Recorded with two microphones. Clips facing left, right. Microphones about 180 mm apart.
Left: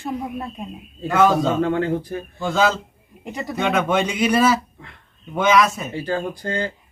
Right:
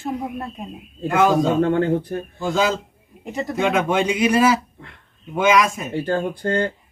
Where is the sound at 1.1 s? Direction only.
10° right (ahead or behind).